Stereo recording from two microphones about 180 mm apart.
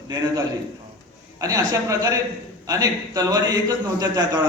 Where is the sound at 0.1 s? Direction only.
20° right (ahead or behind).